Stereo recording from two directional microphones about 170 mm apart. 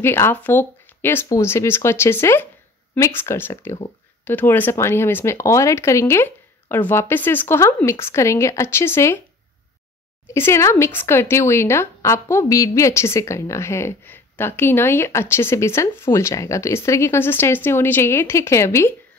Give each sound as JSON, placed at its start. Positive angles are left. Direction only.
{"t": 0.0, "sound": "speech", "side_deg": 15}
{"t": 10.2, "sound": "speech", "side_deg": 15}